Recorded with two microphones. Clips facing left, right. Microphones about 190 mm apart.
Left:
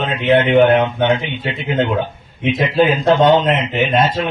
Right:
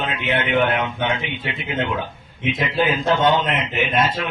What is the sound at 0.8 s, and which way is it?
Speech, 35° left (ahead or behind).